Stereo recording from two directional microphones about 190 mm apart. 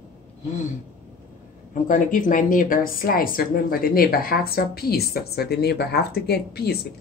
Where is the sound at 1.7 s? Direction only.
45° left (ahead or behind).